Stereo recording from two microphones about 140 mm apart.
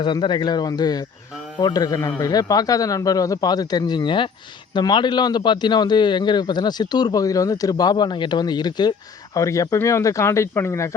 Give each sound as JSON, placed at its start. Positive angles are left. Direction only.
{"t": 0.0, "sound": "a man's voice", "side_deg": 35}